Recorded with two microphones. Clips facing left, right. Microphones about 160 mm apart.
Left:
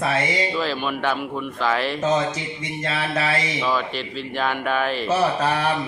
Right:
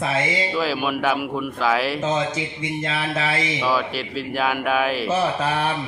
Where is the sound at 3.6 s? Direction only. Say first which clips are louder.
Right 1 dB; 5° right (ahead or behind).